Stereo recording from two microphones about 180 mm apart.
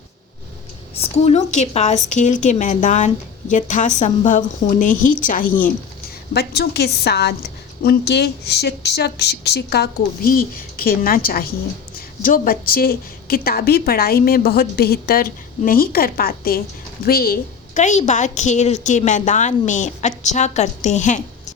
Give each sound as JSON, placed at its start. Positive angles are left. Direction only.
{"t": 0.9, "sound": "a woman's voice", "side_deg": 35}
{"t": 6.3, "sound": "a woman's voice", "side_deg": 65}